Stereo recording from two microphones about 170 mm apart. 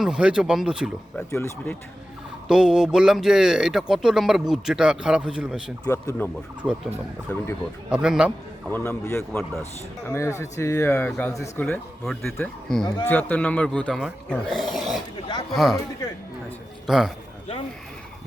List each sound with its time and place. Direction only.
0.0 s speech: 5° right (ahead or behind)
1.1 s speech: 15° left (ahead or behind)
2.5 s speech: 5° right (ahead or behind)
5.8 s speech: 20° left (ahead or behind)
6.6 s speech: 10° right (ahead or behind)
7.3 s speech: 15° left (ahead or behind)
7.9 s speech: 5° right (ahead or behind)
8.7 s speech: 15° left (ahead or behind); by 15.8 s centre (ahead or behind)
16.8 s a man's voice: 5° right (ahead or behind)